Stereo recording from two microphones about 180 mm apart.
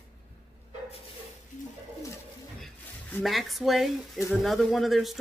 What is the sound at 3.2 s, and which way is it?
Speech, centre (ahead or behind).